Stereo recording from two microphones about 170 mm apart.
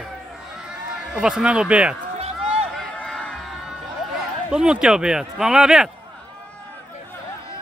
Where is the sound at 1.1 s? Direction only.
5° right (ahead or behind).